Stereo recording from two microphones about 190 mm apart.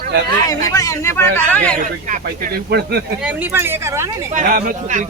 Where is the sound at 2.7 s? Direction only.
55° right (ahead or behind).